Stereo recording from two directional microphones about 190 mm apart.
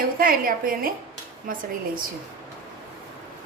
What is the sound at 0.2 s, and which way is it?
Speech, 50° right (ahead or behind).